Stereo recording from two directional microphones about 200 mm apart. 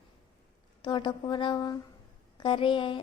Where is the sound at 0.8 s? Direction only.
25° left (ahead or behind).